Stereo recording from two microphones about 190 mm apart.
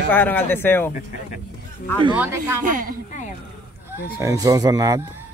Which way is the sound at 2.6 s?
45° right (ahead or behind).